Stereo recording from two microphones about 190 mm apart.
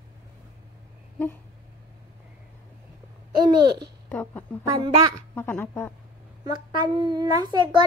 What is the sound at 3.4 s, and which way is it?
Babbling, 25° right (ahead or behind).